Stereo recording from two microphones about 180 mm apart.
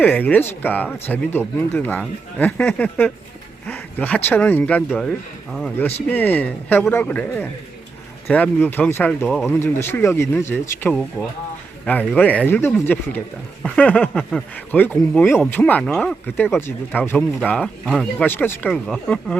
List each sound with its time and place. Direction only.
0.0 s speech: 10° left (ahead or behind)
9.5 s speech: 15° left (ahead or behind)